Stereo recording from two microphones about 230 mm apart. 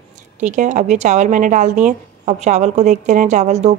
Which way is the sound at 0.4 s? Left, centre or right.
Right.